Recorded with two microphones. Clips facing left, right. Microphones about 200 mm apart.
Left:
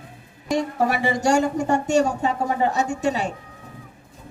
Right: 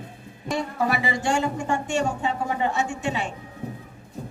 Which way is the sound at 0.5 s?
45° left (ahead or behind).